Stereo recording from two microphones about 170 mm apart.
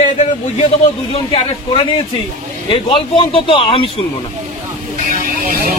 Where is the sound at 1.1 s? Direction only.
35° left (ahead or behind).